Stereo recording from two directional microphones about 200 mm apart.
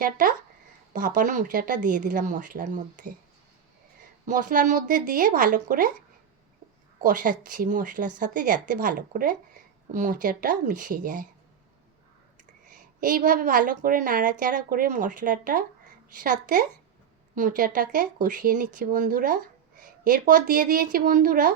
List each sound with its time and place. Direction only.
0.0 s a woman's voice: 40° right (ahead or behind)
4.3 s a woman's voice: 40° right (ahead or behind)
7.0 s a woman's voice: 40° right (ahead or behind)
13.0 s a woman's voice: 45° right (ahead or behind)